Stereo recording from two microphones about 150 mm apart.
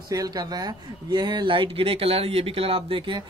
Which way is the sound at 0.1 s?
25° right (ahead or behind).